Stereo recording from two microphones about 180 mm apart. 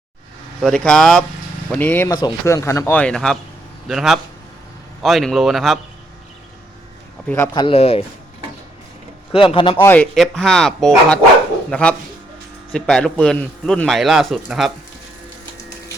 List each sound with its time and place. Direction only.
0.6 s a man's voice: 5° left (ahead or behind)
7.3 s speech: 10° left (ahead or behind)
7.5 s speech: 30° left (ahead or behind)
9.3 s speech: 30° left (ahead or behind)
9.8 s a man's voice: 10° left (ahead or behind)